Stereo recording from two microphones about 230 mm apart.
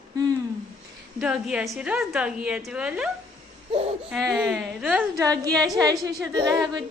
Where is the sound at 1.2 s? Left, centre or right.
Centre.